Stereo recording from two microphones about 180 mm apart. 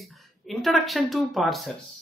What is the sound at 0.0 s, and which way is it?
Speech, centre (ahead or behind).